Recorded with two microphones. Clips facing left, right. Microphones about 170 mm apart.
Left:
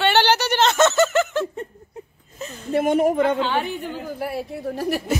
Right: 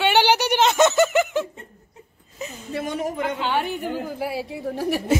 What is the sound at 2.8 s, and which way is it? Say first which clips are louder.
Speech: left 8 dB; 55° left (ahead or behind).